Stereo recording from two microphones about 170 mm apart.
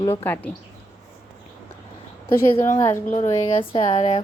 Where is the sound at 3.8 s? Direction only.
40° left (ahead or behind).